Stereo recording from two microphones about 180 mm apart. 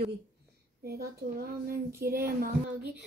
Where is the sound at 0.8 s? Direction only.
55° right (ahead or behind).